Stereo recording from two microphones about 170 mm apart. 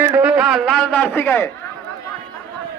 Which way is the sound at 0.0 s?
10° right (ahead or behind).